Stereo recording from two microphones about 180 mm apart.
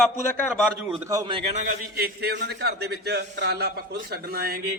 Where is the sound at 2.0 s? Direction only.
60° right (ahead or behind).